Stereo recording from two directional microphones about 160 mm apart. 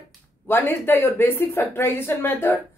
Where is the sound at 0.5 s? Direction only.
15° left (ahead or behind).